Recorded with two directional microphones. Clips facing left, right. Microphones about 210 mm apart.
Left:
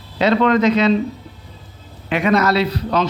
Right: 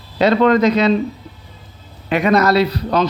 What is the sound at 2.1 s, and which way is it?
Speech, 40° right (ahead or behind).